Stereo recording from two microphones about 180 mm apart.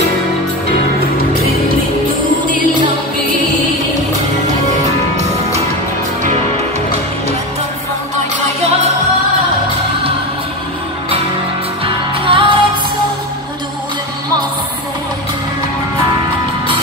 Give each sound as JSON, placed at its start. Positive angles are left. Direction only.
{"t": 11.8, "sound": "music", "side_deg": -30}